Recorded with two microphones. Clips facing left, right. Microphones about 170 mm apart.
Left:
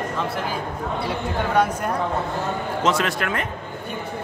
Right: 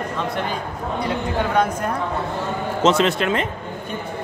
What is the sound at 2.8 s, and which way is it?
Speech, 25° right (ahead or behind).